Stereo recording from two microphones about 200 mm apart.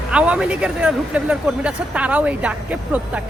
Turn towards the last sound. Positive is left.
turn(degrees=-5)  # may be behind; listen again after turning